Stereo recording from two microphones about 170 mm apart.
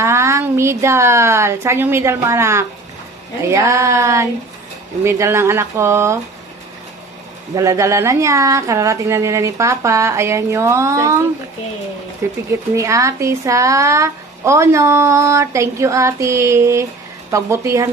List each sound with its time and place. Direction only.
0.0 s a woman's voice: 15° right (ahead or behind)
7.5 s speech: 20° right (ahead or behind)
12.7 s speech: 20° right (ahead or behind)